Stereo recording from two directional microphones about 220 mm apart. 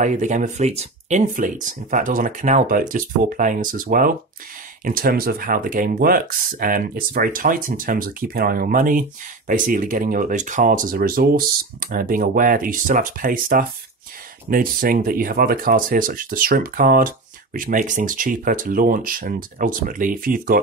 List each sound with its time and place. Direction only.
0.0 s speech: 35° right (ahead or behind)